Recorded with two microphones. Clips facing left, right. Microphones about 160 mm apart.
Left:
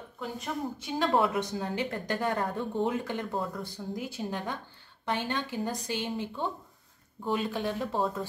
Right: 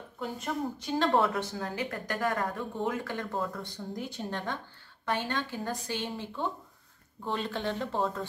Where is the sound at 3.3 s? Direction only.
Centre (ahead or behind).